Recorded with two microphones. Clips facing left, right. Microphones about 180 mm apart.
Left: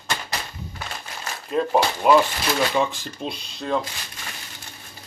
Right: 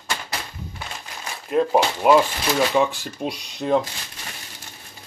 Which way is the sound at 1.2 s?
5° right (ahead or behind).